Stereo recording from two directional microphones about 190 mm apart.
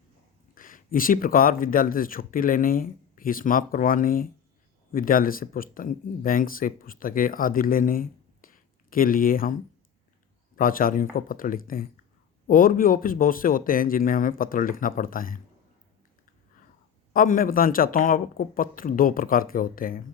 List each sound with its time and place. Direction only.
0.5 s speech: 45° left (ahead or behind)
10.6 s speech: 50° left (ahead or behind)
17.1 s speech: 50° left (ahead or behind)